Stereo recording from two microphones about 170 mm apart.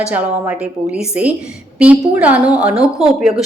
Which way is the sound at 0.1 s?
5° right (ahead or behind).